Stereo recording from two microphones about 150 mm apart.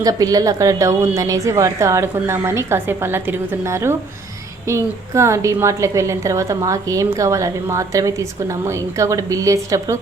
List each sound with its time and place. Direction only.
0.0 s a woman's voice: 25° right (ahead or behind)